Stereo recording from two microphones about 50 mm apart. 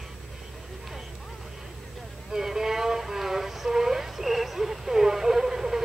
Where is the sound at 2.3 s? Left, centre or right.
Centre.